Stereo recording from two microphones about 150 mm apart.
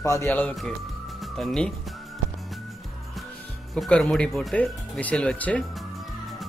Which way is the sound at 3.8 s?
5° left (ahead or behind).